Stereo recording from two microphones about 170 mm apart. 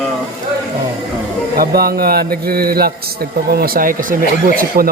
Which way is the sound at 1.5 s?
65° right (ahead or behind).